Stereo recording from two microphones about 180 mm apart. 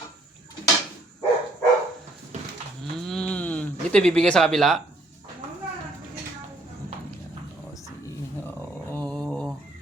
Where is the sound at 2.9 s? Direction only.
5° left (ahead or behind).